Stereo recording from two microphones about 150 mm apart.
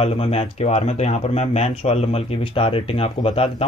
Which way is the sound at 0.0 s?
40° left (ahead or behind).